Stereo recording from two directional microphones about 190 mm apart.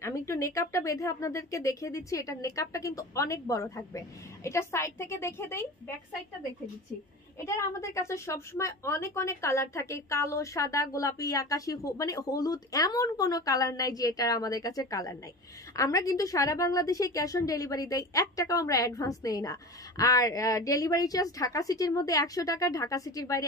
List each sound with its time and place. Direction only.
0.0 s a woman's voice: 15° left (ahead or behind)
7.3 s a woman's voice: 15° left (ahead or behind)